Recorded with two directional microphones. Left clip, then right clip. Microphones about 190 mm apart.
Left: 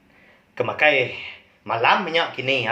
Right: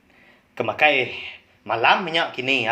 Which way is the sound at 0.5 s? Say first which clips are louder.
Even; 40° right (ahead or behind).